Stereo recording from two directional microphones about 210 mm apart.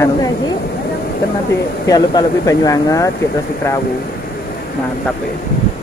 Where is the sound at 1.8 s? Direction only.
15° left (ahead or behind).